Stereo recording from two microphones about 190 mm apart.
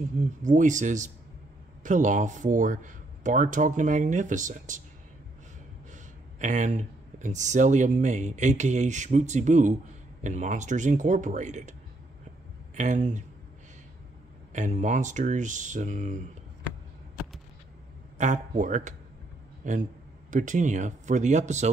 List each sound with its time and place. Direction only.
0.4 s speech: 40° right (ahead or behind)
6.4 s speech: 40° right (ahead or behind)
12.7 s speech: 40° right (ahead or behind)
14.5 s speech: 40° right (ahead or behind)
18.1 s speech: 40° right (ahead or behind)